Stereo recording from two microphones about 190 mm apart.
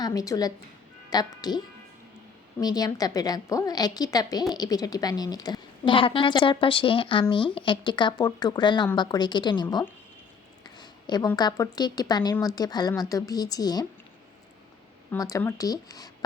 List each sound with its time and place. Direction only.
0.0 s a woman's voice: 20° left (ahead or behind)
10.8 s a sound: 20° left (ahead or behind)
11.3 s a woman's voice: 20° left (ahead or behind)
15.1 s a woman's voice: 15° left (ahead or behind)